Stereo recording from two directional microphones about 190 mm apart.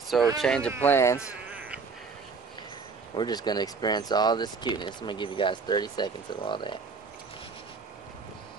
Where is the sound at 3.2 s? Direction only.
20° left (ahead or behind).